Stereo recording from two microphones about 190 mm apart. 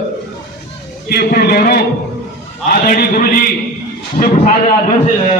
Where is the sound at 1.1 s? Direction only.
55° left (ahead or behind).